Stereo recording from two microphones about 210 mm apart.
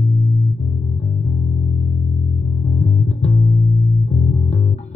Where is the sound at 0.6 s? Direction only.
30° left (ahead or behind).